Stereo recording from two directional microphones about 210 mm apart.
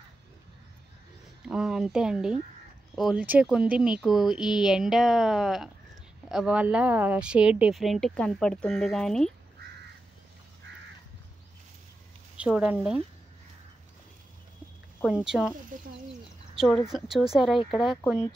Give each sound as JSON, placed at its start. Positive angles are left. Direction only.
{"t": 1.4, "sound": "speech", "side_deg": -5}
{"t": 12.4, "sound": "speech", "side_deg": -5}
{"t": 15.0, "sound": "speech", "side_deg": -5}
{"t": 15.7, "sound": "speech", "side_deg": -40}
{"t": 16.5, "sound": "a woman's voice", "side_deg": 0}